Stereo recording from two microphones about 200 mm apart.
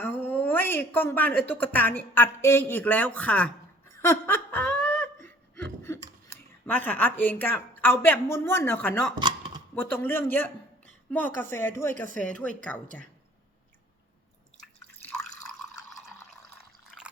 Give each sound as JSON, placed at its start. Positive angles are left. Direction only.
{"t": 0.0, "sound": "speech", "side_deg": 10}
{"t": 4.0, "sound": "laughter", "side_deg": 10}
{"t": 9.1, "sound": "chopping", "side_deg": -20}
{"t": 9.7, "sound": "a woman's voice", "side_deg": 10}
{"t": 16.8, "sound": "water", "side_deg": -5}